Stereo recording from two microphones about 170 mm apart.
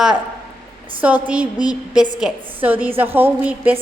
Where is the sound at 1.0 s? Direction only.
10° right (ahead or behind).